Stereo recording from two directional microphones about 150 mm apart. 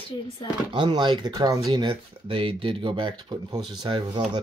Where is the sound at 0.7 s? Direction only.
30° right (ahead or behind).